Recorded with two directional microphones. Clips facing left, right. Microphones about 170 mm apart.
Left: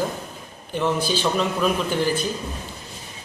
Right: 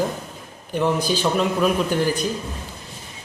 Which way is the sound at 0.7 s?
15° right (ahead or behind).